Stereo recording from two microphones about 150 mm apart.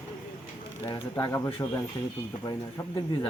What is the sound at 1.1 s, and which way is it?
Speech, 20° left (ahead or behind).